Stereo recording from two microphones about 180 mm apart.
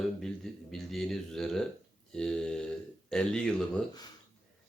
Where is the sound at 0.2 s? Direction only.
Centre (ahead or behind).